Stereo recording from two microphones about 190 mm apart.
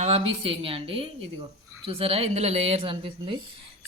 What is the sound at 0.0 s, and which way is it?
A woman's voice, 35° right (ahead or behind).